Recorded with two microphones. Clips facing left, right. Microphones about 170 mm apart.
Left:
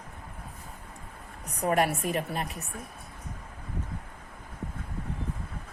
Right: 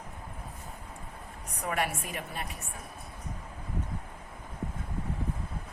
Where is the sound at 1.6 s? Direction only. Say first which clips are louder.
Left 7 dB; 40° left (ahead or behind).